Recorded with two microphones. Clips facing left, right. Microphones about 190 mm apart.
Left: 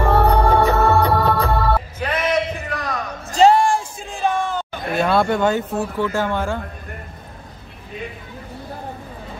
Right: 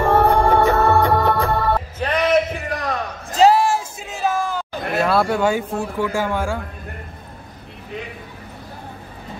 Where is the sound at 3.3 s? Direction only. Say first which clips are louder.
Left 1 dB; 5° right (ahead or behind).